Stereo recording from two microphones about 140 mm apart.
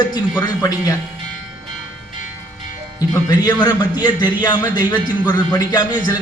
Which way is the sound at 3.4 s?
30° left (ahead or behind).